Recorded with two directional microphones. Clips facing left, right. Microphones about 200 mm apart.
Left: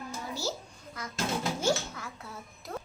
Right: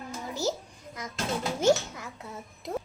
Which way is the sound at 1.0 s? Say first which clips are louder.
Right 1 dB; 20° right (ahead or behind).